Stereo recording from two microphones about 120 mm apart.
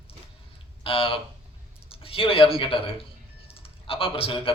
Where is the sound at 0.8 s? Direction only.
50° left (ahead or behind).